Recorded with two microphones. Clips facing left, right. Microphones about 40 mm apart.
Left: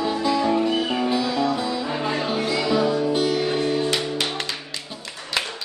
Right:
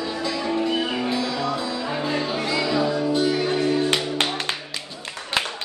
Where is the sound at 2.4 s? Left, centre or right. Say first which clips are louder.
Left 2 dB; centre.